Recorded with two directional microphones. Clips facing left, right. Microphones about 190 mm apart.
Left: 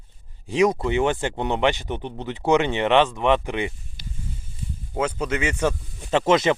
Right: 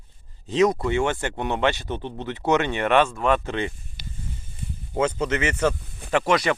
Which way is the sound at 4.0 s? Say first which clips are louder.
Left 1 dB; 60° right (ahead or behind).